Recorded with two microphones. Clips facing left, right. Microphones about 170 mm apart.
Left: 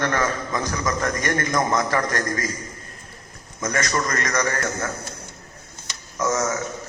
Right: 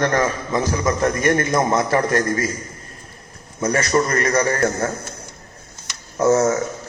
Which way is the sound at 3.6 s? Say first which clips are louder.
Right 6 dB; 30° right (ahead or behind).